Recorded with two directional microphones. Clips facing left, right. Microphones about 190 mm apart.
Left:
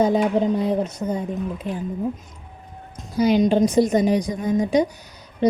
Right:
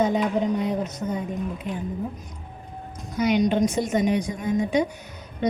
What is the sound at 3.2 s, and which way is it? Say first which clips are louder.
A woman's voice: left 4 dB; 30° left (ahead or behind).